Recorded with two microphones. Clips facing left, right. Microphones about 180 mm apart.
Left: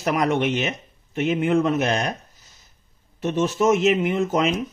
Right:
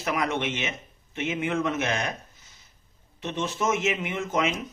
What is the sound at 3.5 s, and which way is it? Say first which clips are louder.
Speech: left 8 dB; 40° left (ahead or behind).